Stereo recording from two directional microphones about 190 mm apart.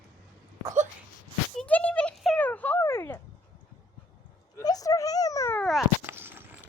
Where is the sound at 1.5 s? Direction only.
5° left (ahead or behind).